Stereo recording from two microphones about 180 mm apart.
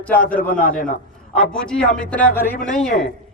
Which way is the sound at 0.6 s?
50° left (ahead or behind).